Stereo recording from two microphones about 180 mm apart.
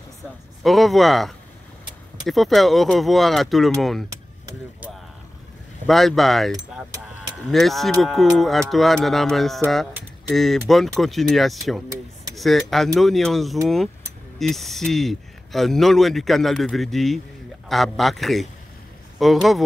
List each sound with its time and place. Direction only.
0.7 s speech: centre (ahead or behind)
4.1 s a sound: 10° right (ahead or behind)
5.9 s speech: centre (ahead or behind)